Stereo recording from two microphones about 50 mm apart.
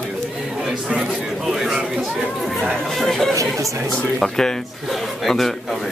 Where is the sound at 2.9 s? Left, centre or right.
Centre.